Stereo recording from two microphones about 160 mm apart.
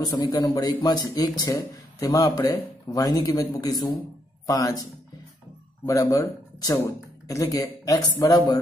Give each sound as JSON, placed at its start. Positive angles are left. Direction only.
{"t": 0.1, "sound": "a man's voice", "side_deg": 25}
{"t": 5.9, "sound": "a man's voice", "side_deg": 20}